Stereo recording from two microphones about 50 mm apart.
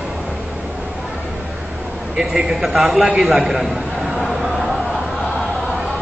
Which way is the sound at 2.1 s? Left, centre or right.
Centre.